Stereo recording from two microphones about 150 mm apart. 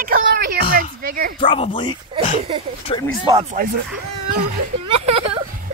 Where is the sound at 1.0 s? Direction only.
75° right (ahead or behind).